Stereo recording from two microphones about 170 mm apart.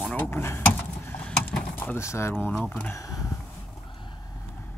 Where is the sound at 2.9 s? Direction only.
20° left (ahead or behind).